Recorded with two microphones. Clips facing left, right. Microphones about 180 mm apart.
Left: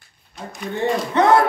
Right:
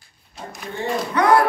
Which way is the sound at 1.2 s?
25° left (ahead or behind).